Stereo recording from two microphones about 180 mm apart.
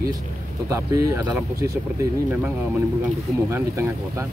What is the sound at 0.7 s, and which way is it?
Speech, 15° right (ahead or behind).